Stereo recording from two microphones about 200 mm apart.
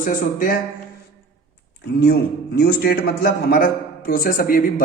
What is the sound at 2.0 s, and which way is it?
A man's voice, 50° left (ahead or behind).